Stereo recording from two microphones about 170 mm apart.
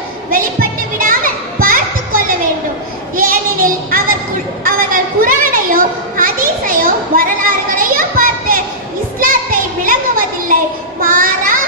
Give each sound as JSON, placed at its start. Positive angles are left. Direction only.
{"t": 0.3, "sound": "children playing", "side_deg": -55}
{"t": 3.2, "sound": "music", "side_deg": -55}
{"t": 4.6, "sound": "children playing", "side_deg": -55}
{"t": 9.2, "sound": "a sound", "side_deg": -55}